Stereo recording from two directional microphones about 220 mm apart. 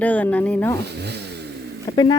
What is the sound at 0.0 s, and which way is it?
Speech, 5° left (ahead or behind).